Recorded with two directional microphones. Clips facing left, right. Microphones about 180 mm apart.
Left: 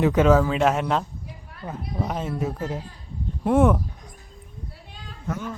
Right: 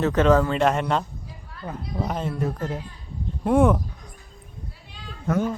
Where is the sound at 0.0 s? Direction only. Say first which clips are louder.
Left 1 dB; 10° left (ahead or behind).